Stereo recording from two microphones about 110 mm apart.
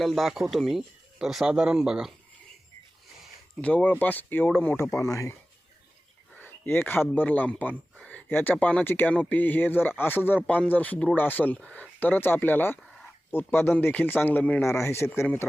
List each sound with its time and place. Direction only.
0.0 s speech: centre (ahead or behind)
3.6 s speech: 10° left (ahead or behind)
6.3 s a man's voice: 15° left (ahead or behind)